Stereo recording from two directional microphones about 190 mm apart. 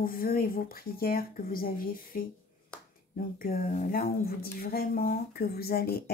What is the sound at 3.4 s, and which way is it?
A woman's voice, 45° left (ahead or behind).